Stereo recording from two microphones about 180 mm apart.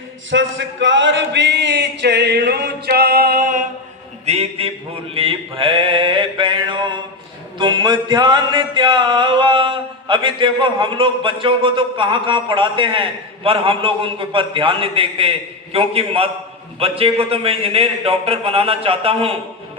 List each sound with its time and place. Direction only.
0.3 s a sound: 90° right; by 3.6 s 50° right (ahead or behind)
4.3 s a man's voice: 35° right (ahead or behind)
5.1 s mantra: 30° right (ahead or behind)
16.8 s a man's voice: 30° right (ahead or behind)